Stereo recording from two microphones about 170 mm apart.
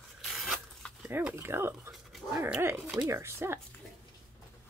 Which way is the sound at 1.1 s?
15° right (ahead or behind).